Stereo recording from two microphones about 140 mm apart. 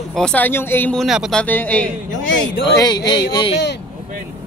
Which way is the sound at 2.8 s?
30° left (ahead or behind).